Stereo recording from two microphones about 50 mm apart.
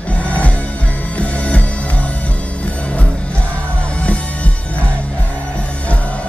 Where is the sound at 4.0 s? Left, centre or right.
Left.